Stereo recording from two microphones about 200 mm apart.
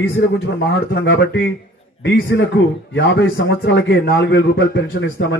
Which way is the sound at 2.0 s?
55° left (ahead or behind).